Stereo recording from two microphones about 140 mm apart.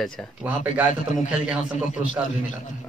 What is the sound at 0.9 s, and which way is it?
Speech, 65° left (ahead or behind).